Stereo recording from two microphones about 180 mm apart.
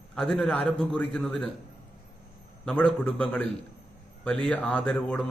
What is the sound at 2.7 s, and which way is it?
Speech, 5° left (ahead or behind).